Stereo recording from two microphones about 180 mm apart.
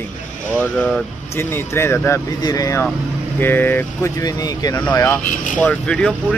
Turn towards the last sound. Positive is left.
turn(degrees=5)  # may be behind; listen again after turning